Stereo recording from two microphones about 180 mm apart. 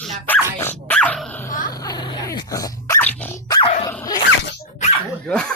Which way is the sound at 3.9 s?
15° left (ahead or behind).